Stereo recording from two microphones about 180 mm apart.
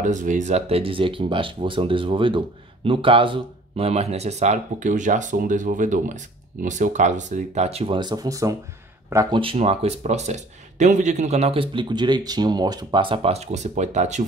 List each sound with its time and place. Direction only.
0.0 s speech: 45° right (ahead or behind); by 9.4 s 20° right (ahead or behind)
9.4 s speech: 30° right (ahead or behind)